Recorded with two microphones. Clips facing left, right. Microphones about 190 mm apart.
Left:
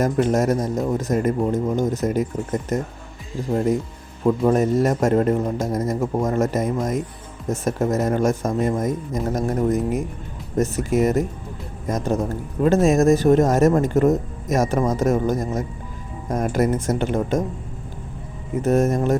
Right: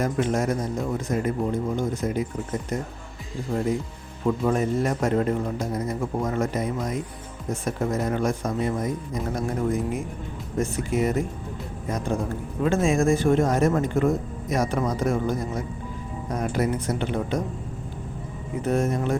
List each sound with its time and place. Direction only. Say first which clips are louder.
0.0 s speech: left 5 dB; 45° left (ahead or behind)
18.6 s speech: left 5 dB; 45° left (ahead or behind)